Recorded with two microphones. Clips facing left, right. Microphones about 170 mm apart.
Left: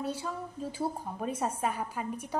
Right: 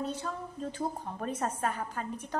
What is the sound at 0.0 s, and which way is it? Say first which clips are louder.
A woman's voice: even; 10° left (ahead or behind).